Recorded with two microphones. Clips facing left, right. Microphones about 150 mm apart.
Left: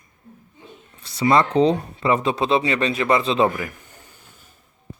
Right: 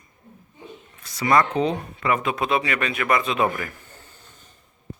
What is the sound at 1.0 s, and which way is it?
Speech, 25° left (ahead or behind).